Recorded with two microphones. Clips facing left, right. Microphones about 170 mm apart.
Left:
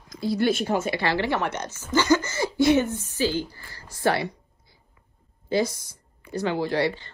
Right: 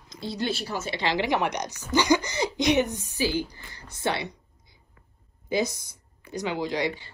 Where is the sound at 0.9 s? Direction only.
20° right (ahead or behind).